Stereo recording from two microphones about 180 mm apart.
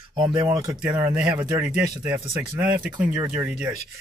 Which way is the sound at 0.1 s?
25° right (ahead or behind).